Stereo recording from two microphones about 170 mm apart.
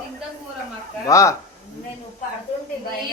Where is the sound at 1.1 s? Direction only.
20° left (ahead or behind).